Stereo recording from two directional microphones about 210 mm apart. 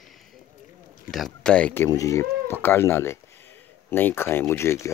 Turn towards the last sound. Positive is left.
turn(degrees=10)  # may be behind; listen again after turning